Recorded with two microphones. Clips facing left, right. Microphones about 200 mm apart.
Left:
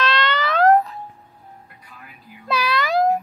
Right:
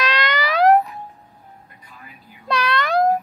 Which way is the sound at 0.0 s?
10° right (ahead or behind).